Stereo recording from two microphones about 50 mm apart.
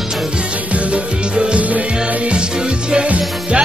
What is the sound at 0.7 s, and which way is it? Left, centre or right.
Music, right.